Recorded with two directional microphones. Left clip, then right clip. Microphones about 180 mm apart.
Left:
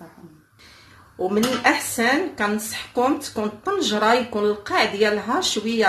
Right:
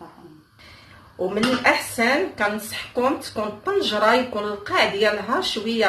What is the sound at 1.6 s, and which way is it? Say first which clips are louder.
Speech: right 1 dB; 55° left (ahead or behind).